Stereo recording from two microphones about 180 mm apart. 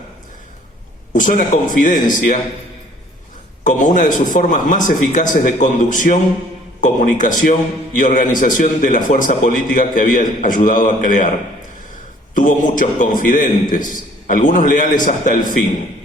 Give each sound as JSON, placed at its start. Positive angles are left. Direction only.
{"t": 1.1, "sound": "a man's voice", "side_deg": 45}
{"t": 3.6, "sound": "a man's voice", "side_deg": 45}
{"t": 12.3, "sound": "a man's voice", "side_deg": 45}